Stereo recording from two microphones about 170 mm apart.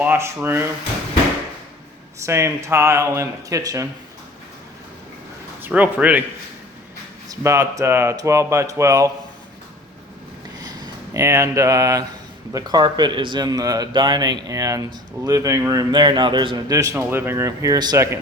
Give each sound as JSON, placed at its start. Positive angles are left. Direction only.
{"t": 0.0, "sound": "speech", "side_deg": -15}
{"t": 2.1, "sound": "speech", "side_deg": -15}
{"t": 5.6, "sound": "speech", "side_deg": -10}
{"t": 7.3, "sound": "speech", "side_deg": -15}
{"t": 10.6, "sound": "speech", "side_deg": -20}